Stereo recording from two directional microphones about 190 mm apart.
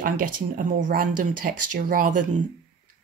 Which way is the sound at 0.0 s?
45° right (ahead or behind).